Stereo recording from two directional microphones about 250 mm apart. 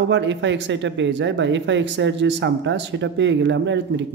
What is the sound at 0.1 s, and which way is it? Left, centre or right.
Speech, right.